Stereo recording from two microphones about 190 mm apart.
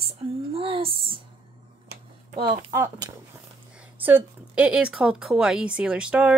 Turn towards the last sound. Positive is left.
turn(degrees=-5)  # may be behind; listen again after turning